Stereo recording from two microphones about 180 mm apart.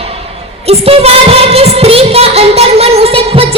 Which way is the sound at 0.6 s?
35° right (ahead or behind).